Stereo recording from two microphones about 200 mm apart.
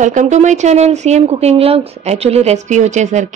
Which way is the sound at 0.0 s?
35° right (ahead or behind).